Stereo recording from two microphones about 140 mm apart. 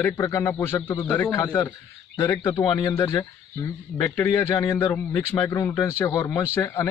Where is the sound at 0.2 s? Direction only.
20° left (ahead or behind).